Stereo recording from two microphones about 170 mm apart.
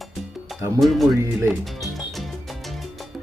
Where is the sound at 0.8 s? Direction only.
Centre (ahead or behind).